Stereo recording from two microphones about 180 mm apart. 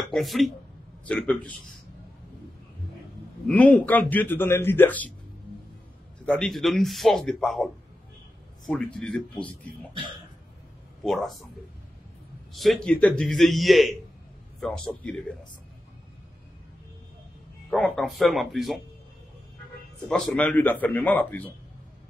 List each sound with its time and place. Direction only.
0.1 s a man's voice: centre (ahead or behind)
3.4 s a man's voice: 10° left (ahead or behind)
6.2 s a man's voice: 5° left (ahead or behind)
11.1 s a man's voice: centre (ahead or behind)
12.5 s a man's voice: centre (ahead or behind)
17.6 s a man's voice: 5° left (ahead or behind)
20.1 s a man's voice: centre (ahead or behind)